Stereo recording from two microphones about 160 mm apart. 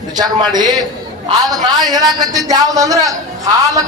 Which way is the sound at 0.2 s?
25° right (ahead or behind).